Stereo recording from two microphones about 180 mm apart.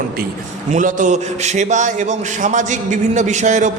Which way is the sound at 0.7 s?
45° right (ahead or behind).